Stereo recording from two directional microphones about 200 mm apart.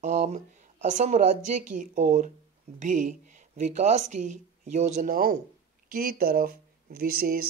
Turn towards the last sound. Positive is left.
turn(degrees=-50)  # may be behind; listen again after turning